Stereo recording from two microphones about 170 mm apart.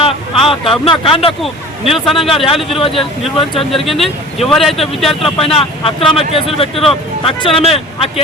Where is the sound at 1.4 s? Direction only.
Centre (ahead or behind).